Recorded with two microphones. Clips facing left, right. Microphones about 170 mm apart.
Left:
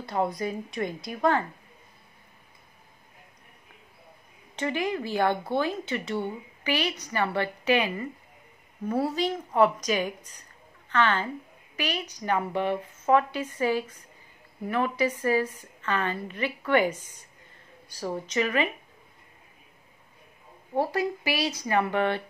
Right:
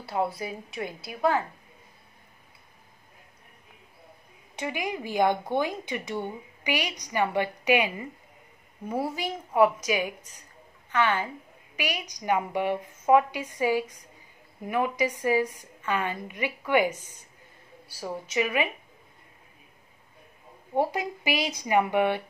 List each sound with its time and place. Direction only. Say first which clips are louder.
0.0 s a woman's voice: left 1 dB; 5° right (ahead or behind)
4.6 s a woman's voice: left 3 dB; 10° right (ahead or behind)
17.9 s speech: left 1 dB; 10° right (ahead or behind)
20.7 s speech: even; 15° right (ahead or behind)